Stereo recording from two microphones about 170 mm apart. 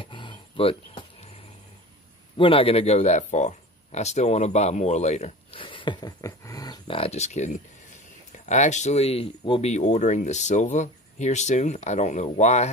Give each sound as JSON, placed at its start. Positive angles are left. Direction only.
{"t": 0.0, "sound": "a sound", "side_deg": 30}
{"t": 2.3, "sound": "speech", "side_deg": 30}
{"t": 7.0, "sound": "speech", "side_deg": 40}